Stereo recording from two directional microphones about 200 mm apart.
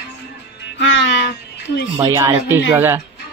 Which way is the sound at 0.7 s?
65° left (ahead or behind).